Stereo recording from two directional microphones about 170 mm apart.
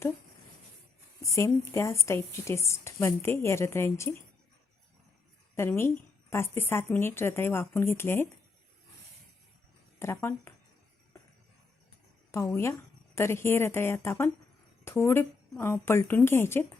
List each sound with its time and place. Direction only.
1.2 s a woman's voice: 20° left (ahead or behind)
5.5 s a woman's voice: 15° left (ahead or behind)
10.0 s a woman's voice: 15° left (ahead or behind)
12.3 s a woman's voice: 15° left (ahead or behind)